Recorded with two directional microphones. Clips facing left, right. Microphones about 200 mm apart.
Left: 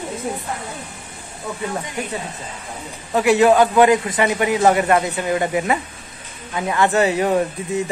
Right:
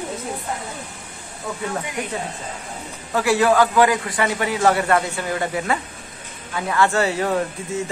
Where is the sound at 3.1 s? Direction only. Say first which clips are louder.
Left 4 dB; 20° left (ahead or behind).